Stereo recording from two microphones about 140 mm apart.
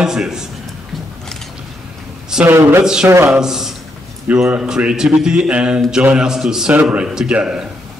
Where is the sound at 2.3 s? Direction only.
15° right (ahead or behind).